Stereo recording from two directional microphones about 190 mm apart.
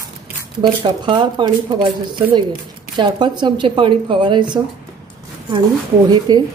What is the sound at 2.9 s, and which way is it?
A woman's voice, 25° right (ahead or behind).